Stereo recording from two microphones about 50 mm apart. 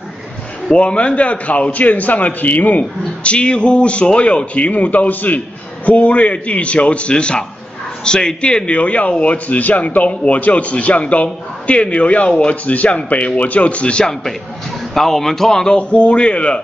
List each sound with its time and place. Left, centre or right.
0.7 s a man's voice: left
3.3 s a man's voice: left
15.0 s speech: centre
15.9 s a man's voice: left